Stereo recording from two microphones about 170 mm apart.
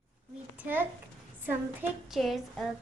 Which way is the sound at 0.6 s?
10° right (ahead or behind).